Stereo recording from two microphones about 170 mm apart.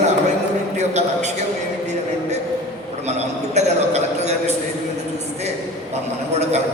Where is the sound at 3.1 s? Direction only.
40° right (ahead or behind).